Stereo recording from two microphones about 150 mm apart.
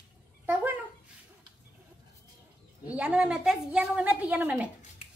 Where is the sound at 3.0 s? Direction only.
5° right (ahead or behind).